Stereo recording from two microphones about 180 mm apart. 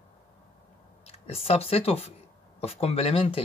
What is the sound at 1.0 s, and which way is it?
Speech, 35° left (ahead or behind).